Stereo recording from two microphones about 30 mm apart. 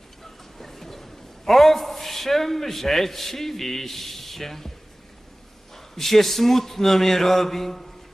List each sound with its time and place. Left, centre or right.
0.6 s a man's voice: centre
5.7 s speech: centre